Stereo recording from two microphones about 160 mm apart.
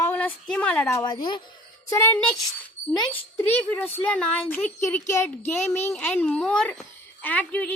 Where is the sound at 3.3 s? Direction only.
10° left (ahead or behind).